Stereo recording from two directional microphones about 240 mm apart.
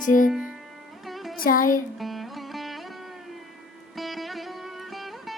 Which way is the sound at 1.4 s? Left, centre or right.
Left.